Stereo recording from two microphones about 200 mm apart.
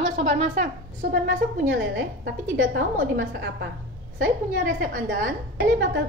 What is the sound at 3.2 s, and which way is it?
Speech, 65° right (ahead or behind).